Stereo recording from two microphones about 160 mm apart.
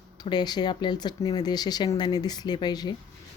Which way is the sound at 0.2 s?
25° left (ahead or behind).